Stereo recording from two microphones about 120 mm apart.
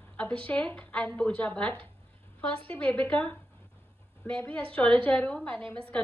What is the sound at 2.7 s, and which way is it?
Speech, 15° left (ahead or behind).